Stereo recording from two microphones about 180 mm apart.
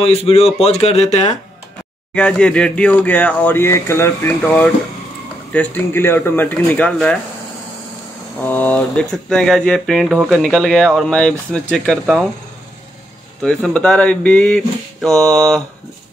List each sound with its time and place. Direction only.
0.0 s speech: 35° left (ahead or behind)
2.1 s speech: 5° left (ahead or behind)
8.4 s speech: 10° left (ahead or behind)
13.4 s speech: 5° left (ahead or behind)